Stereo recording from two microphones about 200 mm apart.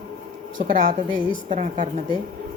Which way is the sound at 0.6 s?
40° right (ahead or behind).